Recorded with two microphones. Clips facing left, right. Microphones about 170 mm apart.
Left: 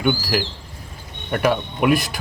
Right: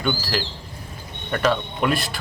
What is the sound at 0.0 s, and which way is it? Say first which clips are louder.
Speech: left 4 dB; 10° left (ahead or behind).